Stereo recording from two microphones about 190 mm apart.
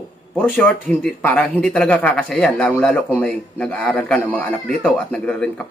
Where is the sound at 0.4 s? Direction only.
10° left (ahead or behind).